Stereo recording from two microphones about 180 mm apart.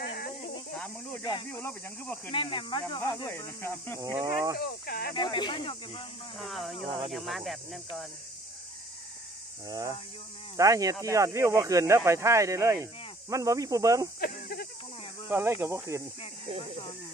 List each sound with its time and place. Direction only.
0.0 s snake: 60° left (ahead or behind)
1.2 s speech: 20° left (ahead or behind)
4.0 s speech: 20° right (ahead or behind)
4.6 s speech: 60° left (ahead or behind)
5.1 s speech: 25° left (ahead or behind)
6.3 s speech: centre (ahead or behind)
9.7 s speech: 20° right (ahead or behind)
15.2 s speech: 10° right (ahead or behind)